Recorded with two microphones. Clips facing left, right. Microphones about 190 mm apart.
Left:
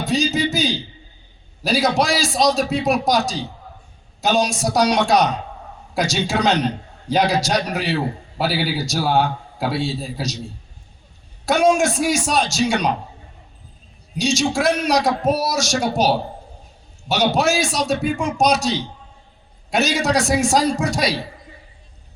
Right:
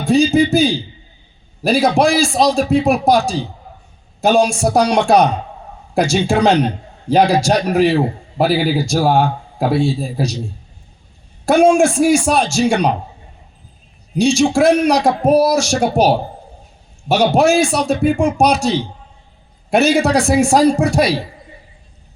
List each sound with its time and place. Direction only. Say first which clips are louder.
0.0 s a sound: right 7 dB; 50° right (ahead or behind)
0.3 s a man's voice: right 8 dB; 55° right (ahead or behind)
4.2 s a man's voice: right 6 dB; 55° right (ahead or behind)
11.4 s a man's voice: right 5 dB; 50° right (ahead or behind)
14.2 s a man's voice: right 7 dB; 55° right (ahead or behind)